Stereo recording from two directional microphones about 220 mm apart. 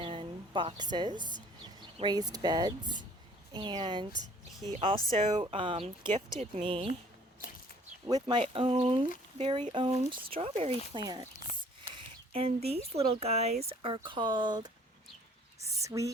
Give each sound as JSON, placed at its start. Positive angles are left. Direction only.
{"t": 0.0, "sound": "a woman's voice", "side_deg": -25}
{"t": 8.0, "sound": "speech", "side_deg": -20}
{"t": 12.3, "sound": "speech", "side_deg": -25}
{"t": 15.6, "sound": "a sound", "side_deg": -15}